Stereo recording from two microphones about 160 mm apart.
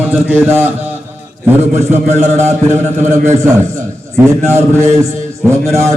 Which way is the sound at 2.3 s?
45° right (ahead or behind).